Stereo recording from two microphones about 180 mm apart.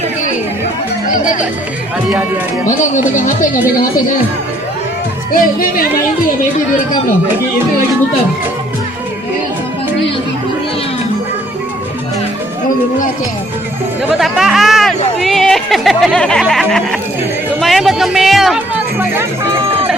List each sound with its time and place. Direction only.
2.6 s speech: 45° left (ahead or behind)
5.3 s speech: 55° left (ahead or behind)
14.1 s speech: centre (ahead or behind)
17.6 s music: centre (ahead or behind)